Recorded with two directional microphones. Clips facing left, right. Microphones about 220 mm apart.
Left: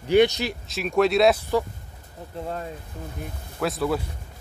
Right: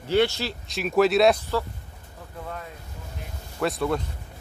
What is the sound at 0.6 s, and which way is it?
Speech, centre (ahead or behind).